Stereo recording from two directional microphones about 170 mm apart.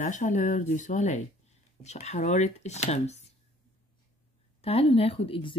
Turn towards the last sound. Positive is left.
turn(degrees=35)  # may be behind; listen again after turning